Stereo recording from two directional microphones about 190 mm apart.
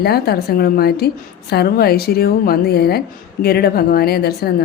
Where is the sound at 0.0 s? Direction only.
55° left (ahead or behind).